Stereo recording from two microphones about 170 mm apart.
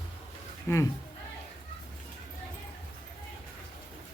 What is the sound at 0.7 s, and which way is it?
Speech, 15° left (ahead or behind).